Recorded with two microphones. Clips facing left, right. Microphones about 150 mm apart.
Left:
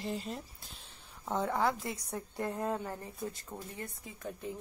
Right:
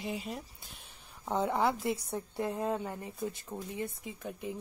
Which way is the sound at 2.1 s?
10° right (ahead or behind).